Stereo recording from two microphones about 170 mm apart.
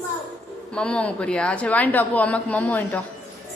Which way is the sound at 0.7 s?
5° left (ahead or behind).